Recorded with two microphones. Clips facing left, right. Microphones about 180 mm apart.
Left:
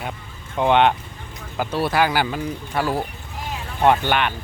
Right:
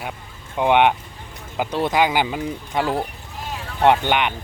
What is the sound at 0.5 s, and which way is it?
Speech, 10° right (ahead or behind).